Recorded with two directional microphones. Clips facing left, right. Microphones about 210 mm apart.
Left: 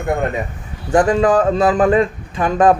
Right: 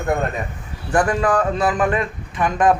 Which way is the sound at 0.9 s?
25° left (ahead or behind).